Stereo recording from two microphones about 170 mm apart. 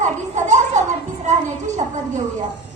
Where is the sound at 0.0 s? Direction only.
45° right (ahead or behind).